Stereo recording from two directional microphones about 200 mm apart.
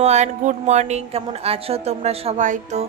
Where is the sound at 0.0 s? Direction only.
35° right (ahead or behind).